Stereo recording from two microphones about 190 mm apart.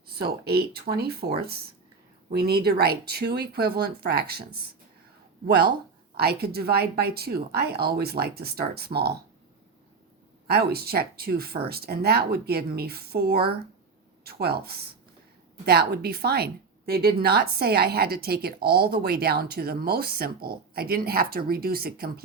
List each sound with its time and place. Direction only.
0.1 s speech: 55° right (ahead or behind)
2.3 s speech: 55° right (ahead or behind)
6.1 s speech: 55° right (ahead or behind)
10.4 s a woman's voice: 55° right (ahead or behind)